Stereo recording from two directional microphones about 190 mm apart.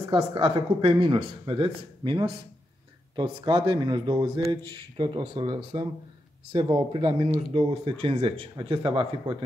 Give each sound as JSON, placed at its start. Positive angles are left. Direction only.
{"t": 0.1, "sound": "speech", "side_deg": -25}